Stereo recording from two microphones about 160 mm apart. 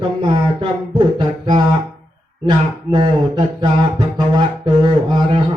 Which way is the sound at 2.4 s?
30° right (ahead or behind).